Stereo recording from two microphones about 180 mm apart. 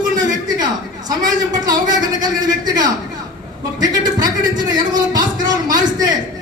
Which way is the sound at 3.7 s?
20° right (ahead or behind).